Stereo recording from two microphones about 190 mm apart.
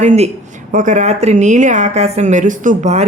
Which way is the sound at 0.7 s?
40° right (ahead or behind).